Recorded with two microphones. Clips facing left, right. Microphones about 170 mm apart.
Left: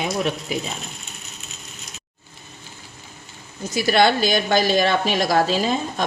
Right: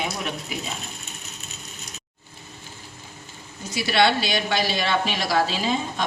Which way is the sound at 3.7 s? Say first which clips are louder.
Left 3 dB; 45° left (ahead or behind).